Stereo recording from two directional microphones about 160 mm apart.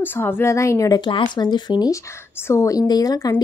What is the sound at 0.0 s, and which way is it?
Speech, 15° left (ahead or behind).